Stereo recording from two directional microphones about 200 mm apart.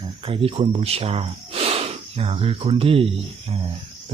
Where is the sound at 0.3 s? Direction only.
30° right (ahead or behind).